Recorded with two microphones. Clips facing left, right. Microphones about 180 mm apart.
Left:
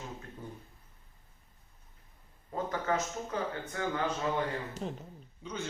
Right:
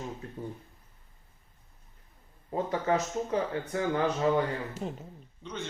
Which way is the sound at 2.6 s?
25° right (ahead or behind).